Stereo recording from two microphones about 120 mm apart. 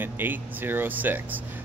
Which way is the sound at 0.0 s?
15° right (ahead or behind).